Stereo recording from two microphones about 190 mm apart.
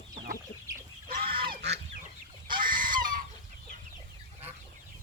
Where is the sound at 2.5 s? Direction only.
50° right (ahead or behind).